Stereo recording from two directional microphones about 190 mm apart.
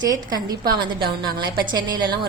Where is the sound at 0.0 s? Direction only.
20° right (ahead or behind).